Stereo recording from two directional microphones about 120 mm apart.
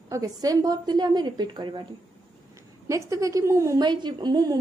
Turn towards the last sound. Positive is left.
turn(degrees=-35)  # may be behind; listen again after turning